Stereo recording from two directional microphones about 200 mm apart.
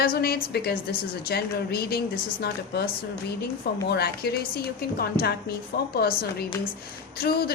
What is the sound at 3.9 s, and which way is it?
A woman's voice, 55° left (ahead or behind).